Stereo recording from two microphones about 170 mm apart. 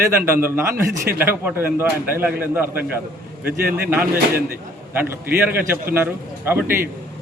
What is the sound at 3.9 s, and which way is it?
Speech, 10° right (ahead or behind).